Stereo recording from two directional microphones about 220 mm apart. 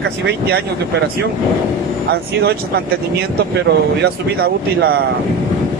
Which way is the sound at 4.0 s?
45° right (ahead or behind).